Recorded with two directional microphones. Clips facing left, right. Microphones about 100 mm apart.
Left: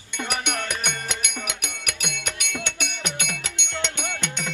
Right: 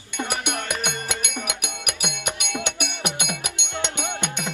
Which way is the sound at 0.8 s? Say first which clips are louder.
Right 1 dB; 15° right (ahead or behind).